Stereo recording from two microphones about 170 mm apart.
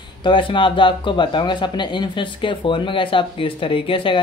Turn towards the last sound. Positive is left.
turn(degrees=30)  # may be behind; listen again after turning